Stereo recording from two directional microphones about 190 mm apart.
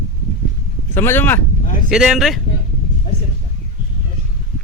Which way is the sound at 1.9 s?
Centre (ahead or behind).